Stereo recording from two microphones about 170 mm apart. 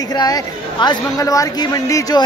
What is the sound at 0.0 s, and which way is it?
A woman's voice, 25° left (ahead or behind).